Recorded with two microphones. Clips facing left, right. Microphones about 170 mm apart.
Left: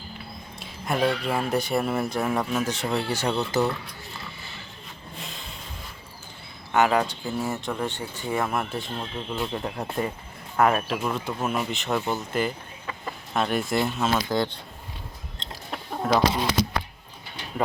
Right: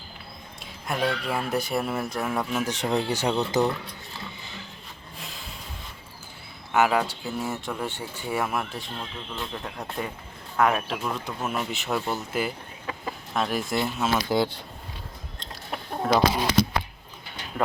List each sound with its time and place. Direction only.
0.6 s speech: centre (ahead or behind)
5.1 s vehicle: centre (ahead or behind)
6.7 s speech: 5° right (ahead or behind)
9.0 s speech: 15° left (ahead or behind); by 14.5 s 5° right (ahead or behind)
16.0 s speech: 5° right (ahead or behind)